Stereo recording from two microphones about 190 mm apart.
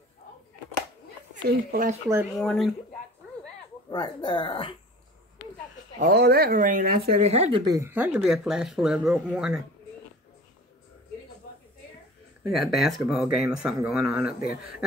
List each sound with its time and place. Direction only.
1.3 s speech: 45° right (ahead or behind)
2.3 s speech: centre (ahead or behind)
3.9 s speech: 25° left (ahead or behind)
5.9 s speech: 55° right (ahead or behind)
7.3 s speech: 35° right (ahead or behind)
7.7 s speech: 10° right (ahead or behind)
12.4 s speech: centre (ahead or behind)